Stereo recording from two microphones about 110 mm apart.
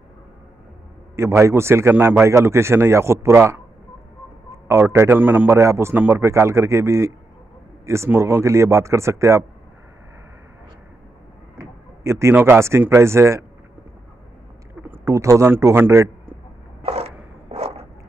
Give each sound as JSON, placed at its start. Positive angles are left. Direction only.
{"t": 1.1, "sound": "a man's voice", "side_deg": -25}
{"t": 11.5, "sound": "speech", "side_deg": -25}
{"t": 15.0, "sound": "a man's voice", "side_deg": -30}
{"t": 16.8, "sound": "a sound", "side_deg": -70}